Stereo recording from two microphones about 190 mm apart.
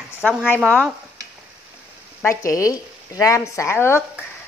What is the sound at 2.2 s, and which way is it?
Speech, 15° left (ahead or behind).